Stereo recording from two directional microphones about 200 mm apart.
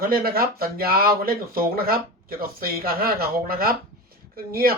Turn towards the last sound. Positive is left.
turn(degrees=-50)  # may be behind; listen again after turning